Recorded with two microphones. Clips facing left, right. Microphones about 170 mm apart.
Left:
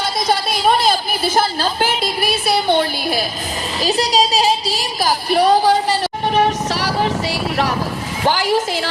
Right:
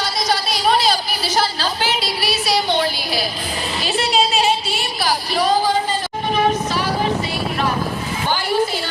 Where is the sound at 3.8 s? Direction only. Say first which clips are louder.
Left 3 dB; 35° left (ahead or behind).